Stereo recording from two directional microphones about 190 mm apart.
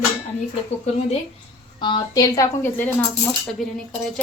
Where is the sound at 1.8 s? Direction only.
25° left (ahead or behind).